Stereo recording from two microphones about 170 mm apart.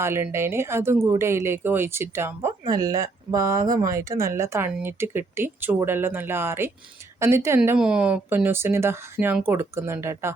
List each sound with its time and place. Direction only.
0.0 s speech: 15° right (ahead or behind)